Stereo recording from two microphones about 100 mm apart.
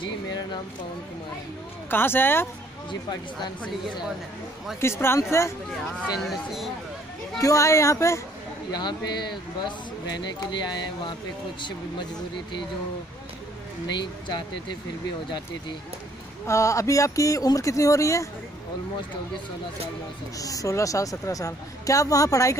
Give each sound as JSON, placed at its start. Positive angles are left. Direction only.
{"t": 1.9, "sound": "speech", "side_deg": 20}
{"t": 4.7, "sound": "speech", "side_deg": 25}
{"t": 5.9, "sound": "speech", "side_deg": 0}
{"t": 7.3, "sound": "a woman's voice", "side_deg": 35}
{"t": 8.7, "sound": "speech", "side_deg": 45}
{"t": 13.9, "sound": "speech", "side_deg": 50}
{"t": 16.4, "sound": "a woman's voice", "side_deg": 30}
{"t": 20.3, "sound": "a woman's voice", "side_deg": 35}